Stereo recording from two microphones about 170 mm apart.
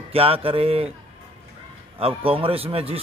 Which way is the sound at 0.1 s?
35° right (ahead or behind).